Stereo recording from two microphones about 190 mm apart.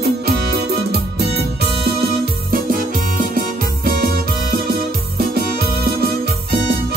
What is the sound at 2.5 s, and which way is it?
Music, 45° right (ahead or behind).